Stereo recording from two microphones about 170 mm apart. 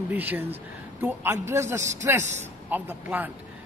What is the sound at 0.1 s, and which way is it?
Speech, 10° right (ahead or behind).